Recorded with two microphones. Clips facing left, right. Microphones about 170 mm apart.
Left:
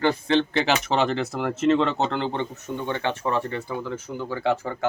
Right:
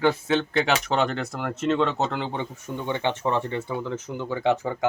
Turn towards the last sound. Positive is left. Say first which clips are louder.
# right 1 dB
turn(degrees=-20)  # may be behind; listen again after turning